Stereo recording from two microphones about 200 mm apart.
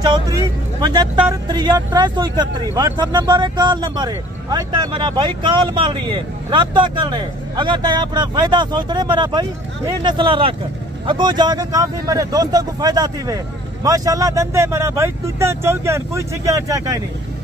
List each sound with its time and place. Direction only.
0.0 s speech: 15° right (ahead or behind)